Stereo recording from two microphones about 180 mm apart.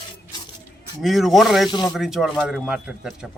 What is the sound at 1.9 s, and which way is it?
A man's voice, 5° right (ahead or behind).